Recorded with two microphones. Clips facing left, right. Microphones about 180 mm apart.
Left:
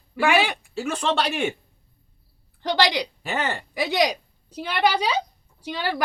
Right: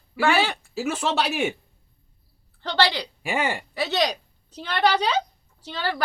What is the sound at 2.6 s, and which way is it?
Speech, 15° left (ahead or behind).